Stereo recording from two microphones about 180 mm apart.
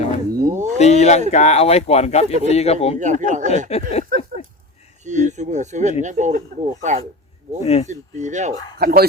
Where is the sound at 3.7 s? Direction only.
35° left (ahead or behind).